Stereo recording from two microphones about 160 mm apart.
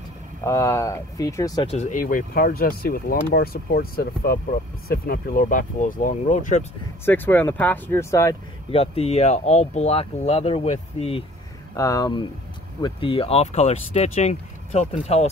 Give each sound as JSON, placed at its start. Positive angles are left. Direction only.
{"t": 0.4, "sound": "speech", "side_deg": 20}
{"t": 1.7, "sound": "speech", "side_deg": 45}
{"t": 7.1, "sound": "speech", "side_deg": 10}
{"t": 8.7, "sound": "speech", "side_deg": 40}
{"t": 11.7, "sound": "speech", "side_deg": 20}